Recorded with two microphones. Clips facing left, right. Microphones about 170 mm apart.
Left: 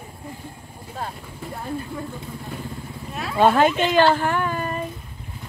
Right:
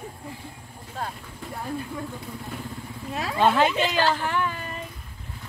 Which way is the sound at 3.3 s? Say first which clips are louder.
Left 4 dB; 50° left (ahead or behind).